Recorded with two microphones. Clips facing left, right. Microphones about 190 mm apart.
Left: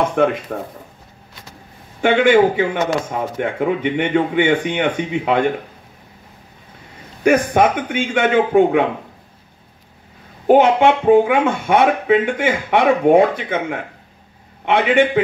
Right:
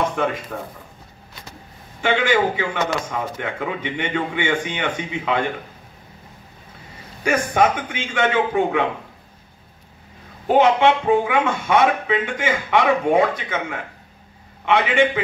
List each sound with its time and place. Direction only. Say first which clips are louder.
0.1 s speech: left 7 dB; 55° left (ahead or behind)
2.0 s a man's voice: left 7 dB; 55° left (ahead or behind)
7.2 s a man's voice: left 5 dB; 55° left (ahead or behind)
10.4 s a man's voice: left 4 dB; 55° left (ahead or behind)
14.6 s a man's voice: left 3 dB; 55° left (ahead or behind)